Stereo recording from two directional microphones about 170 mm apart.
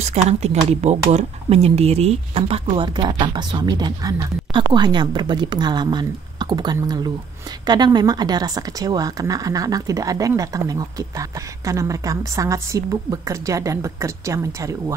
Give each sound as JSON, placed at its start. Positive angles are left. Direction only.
{"t": 0.0, "sound": "speech", "side_deg": -40}